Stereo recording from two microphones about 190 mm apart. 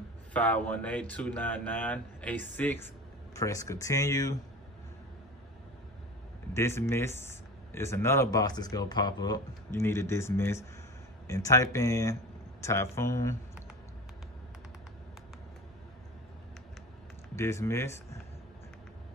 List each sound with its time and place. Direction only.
0.3 s speech: 5° left (ahead or behind)
6.5 s speech: 15° left (ahead or behind)
17.4 s speech: 15° left (ahead or behind)